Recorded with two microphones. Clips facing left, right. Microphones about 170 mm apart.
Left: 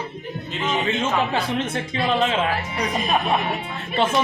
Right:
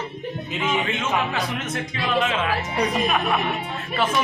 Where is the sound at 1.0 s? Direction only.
30° left (ahead or behind).